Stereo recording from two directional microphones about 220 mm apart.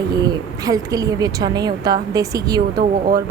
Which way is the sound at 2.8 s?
40° right (ahead or behind).